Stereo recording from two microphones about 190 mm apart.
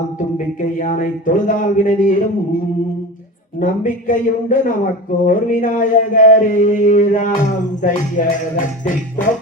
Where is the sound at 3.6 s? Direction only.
45° left (ahead or behind).